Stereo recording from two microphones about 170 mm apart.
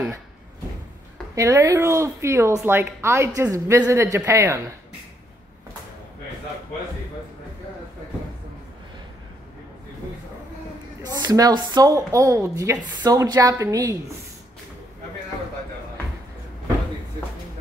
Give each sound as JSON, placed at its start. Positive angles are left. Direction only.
{"t": 1.3, "sound": "a woman's voice", "side_deg": -20}
{"t": 11.0, "sound": "speech", "side_deg": -25}